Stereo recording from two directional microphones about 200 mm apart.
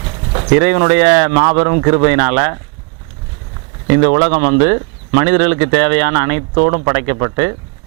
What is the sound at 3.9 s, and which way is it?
Speech, 20° right (ahead or behind).